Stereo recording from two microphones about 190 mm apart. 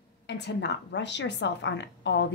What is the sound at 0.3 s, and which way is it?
A woman's voice, 65° left (ahead or behind).